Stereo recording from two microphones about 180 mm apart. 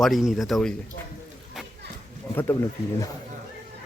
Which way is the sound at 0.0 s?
Centre (ahead or behind).